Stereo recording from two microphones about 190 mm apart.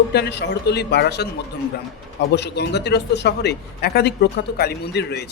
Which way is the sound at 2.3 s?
60° left (ahead or behind).